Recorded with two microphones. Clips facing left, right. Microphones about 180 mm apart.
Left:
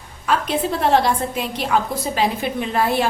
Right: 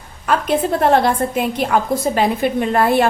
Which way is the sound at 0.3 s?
50° right (ahead or behind).